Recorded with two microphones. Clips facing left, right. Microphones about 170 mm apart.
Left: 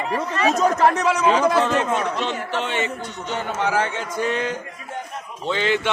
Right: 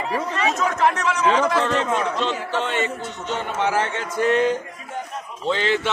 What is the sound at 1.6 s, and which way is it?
Speech, 5° left (ahead or behind).